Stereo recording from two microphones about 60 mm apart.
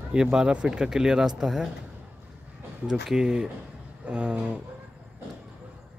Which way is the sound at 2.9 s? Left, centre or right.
Centre.